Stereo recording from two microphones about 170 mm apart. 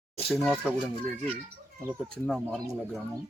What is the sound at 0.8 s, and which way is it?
Speech, 35° right (ahead or behind).